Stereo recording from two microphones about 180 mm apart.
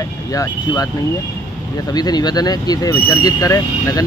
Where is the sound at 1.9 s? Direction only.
20° left (ahead or behind).